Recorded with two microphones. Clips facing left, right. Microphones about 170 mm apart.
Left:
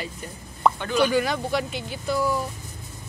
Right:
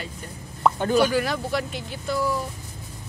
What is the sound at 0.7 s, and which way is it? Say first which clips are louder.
Speech: right 5 dB; 40° right (ahead or behind).